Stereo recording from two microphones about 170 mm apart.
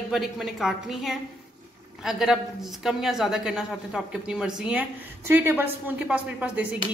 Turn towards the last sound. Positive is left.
turn(degrees=-10)  # may be behind; listen again after turning